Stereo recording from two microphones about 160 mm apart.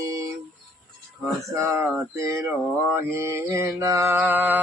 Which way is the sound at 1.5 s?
15° right (ahead or behind).